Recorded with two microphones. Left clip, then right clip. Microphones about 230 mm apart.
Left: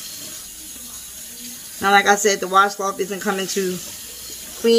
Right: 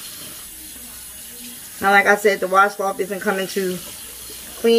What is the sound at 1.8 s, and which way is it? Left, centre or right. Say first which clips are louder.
Speech: right 1 dB; centre.